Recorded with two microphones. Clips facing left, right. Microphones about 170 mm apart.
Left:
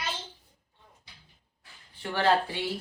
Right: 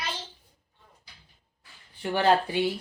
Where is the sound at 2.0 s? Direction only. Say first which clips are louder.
Right 2 dB; 15° right (ahead or behind).